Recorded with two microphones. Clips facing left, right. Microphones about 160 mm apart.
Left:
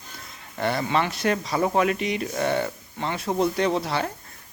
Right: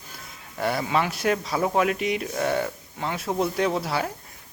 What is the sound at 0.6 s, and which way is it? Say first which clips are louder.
Speech: even; 5° right (ahead or behind).